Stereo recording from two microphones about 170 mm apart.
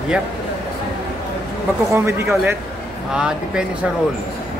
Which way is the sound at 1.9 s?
15° right (ahead or behind).